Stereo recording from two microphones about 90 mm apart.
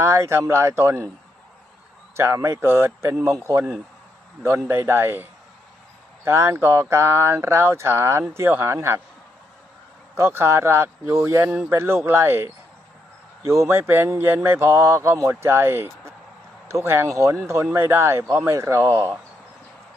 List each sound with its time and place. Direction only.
0.0 s speech: 30° right (ahead or behind)
2.1 s speech: 30° right (ahead or behind)
10.2 s speech: 25° right (ahead or behind)